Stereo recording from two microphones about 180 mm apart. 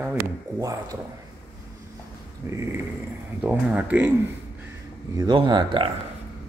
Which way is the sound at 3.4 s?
10° right (ahead or behind).